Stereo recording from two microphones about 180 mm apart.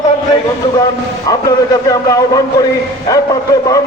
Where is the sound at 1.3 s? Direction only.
20° left (ahead or behind).